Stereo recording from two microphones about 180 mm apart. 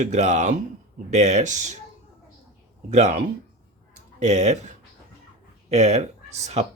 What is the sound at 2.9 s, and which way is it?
Speech, 40° right (ahead or behind).